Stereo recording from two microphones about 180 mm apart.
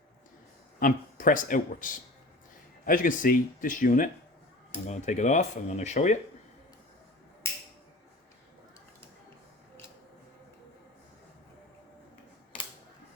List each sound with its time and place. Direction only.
0.8 s speech: 50° left (ahead or behind)